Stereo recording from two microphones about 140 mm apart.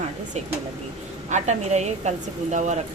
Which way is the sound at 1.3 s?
55° right (ahead or behind).